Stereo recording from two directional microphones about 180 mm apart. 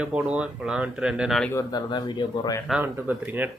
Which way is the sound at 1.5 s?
20° left (ahead or behind).